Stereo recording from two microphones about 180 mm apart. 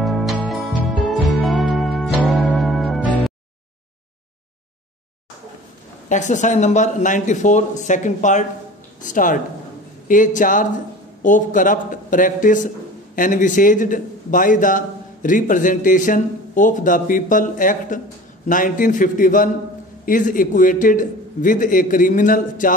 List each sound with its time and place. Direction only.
0.0 s music: centre (ahead or behind)
6.0 s a man's voice: 45° left (ahead or behind)